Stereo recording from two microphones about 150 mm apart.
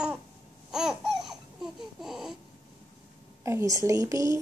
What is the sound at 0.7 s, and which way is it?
Babbling, 5° right (ahead or behind).